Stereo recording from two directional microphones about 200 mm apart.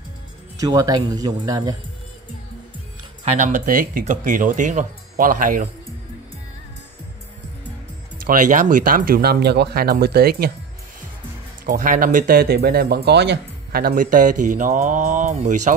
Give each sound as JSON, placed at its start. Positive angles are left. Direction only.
{"t": 0.6, "sound": "speech", "side_deg": -15}
{"t": 3.3, "sound": "speech", "side_deg": -40}
{"t": 8.2, "sound": "speech", "side_deg": -40}
{"t": 11.6, "sound": "speech", "side_deg": -40}